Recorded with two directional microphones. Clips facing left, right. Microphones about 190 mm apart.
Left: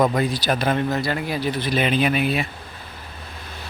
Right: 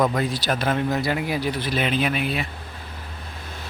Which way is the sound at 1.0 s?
15° right (ahead or behind).